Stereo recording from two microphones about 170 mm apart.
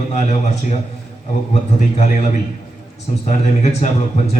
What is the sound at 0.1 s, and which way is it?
Speech, 45° left (ahead or behind).